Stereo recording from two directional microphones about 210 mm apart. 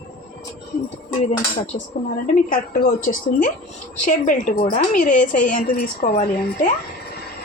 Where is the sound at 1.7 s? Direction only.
45° left (ahead or behind).